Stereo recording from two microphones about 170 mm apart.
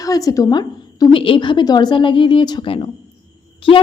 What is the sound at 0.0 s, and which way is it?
A woman's voice, 20° left (ahead or behind).